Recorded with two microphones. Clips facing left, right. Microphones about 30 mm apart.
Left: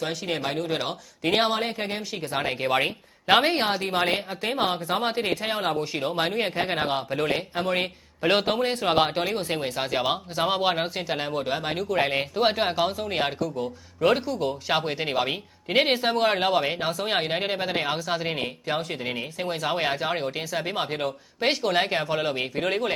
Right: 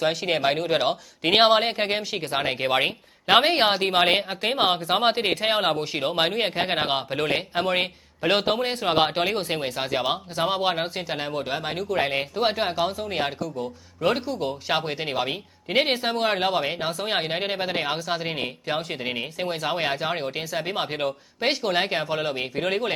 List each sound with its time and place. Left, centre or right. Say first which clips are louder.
0.0 s speech: right 5 dB; centre
0.3 s speech: right 5 dB; right
0.8 s speech: right 5 dB; centre
1.3 s speech: right 5 dB; right; by 2.9 s centre
3.2 s speech: right 2 dB; centre
3.5 s speech: right 4 dB; right
5.7 s speech: right 2 dB; centre
8.2 s speech: even; centre